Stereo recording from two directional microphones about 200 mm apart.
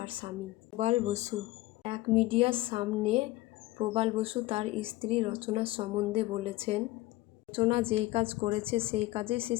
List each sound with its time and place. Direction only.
0.0 s speech: 25° right (ahead or behind)
0.8 s speech: 35° right (ahead or behind)